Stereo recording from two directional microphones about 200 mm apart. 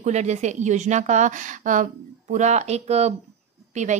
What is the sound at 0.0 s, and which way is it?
A woman's voice, 35° right (ahead or behind).